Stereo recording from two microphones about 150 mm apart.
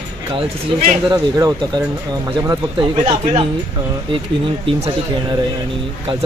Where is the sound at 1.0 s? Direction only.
30° right (ahead or behind).